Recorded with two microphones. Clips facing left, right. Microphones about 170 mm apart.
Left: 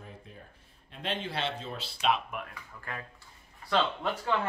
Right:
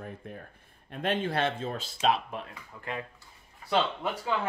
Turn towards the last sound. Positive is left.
turn(degrees=-5)  # may be behind; listen again after turning